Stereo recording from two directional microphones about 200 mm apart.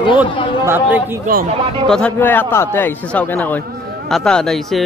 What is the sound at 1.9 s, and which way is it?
A man's voice, 5° left (ahead or behind).